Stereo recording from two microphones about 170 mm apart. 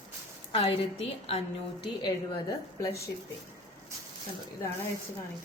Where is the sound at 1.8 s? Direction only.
25° left (ahead or behind).